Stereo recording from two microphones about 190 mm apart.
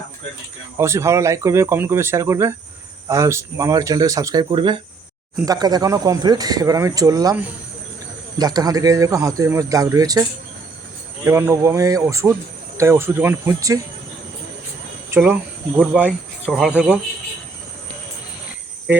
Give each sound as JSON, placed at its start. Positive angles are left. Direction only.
{"t": 0.8, "sound": "speech", "side_deg": -15}
{"t": 8.4, "sound": "speech", "side_deg": -20}
{"t": 11.3, "sound": "speech", "side_deg": -15}
{"t": 15.1, "sound": "speech", "side_deg": -10}